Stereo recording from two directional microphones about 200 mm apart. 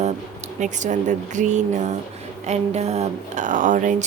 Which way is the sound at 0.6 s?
35° right (ahead or behind).